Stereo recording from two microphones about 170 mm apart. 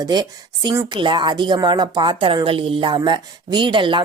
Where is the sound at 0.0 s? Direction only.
25° right (ahead or behind).